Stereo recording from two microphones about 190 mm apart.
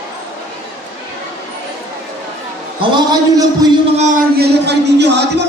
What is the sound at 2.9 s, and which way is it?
Speech, 20° right (ahead or behind).